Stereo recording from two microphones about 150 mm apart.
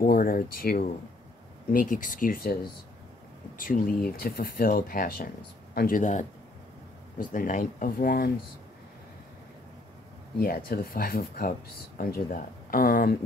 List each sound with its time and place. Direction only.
0.0 s speech: 75° left (ahead or behind)
1.7 s speech: 60° left (ahead or behind)
3.5 s speech: 70° left (ahead or behind)
4.2 s speech: 80° left
5.8 s speech: 65° left (ahead or behind); by 8.3 s 80° left
10.4 s speech: 80° left